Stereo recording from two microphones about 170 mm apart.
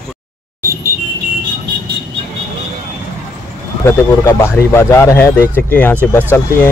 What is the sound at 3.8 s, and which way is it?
Speech, 15° left (ahead or behind).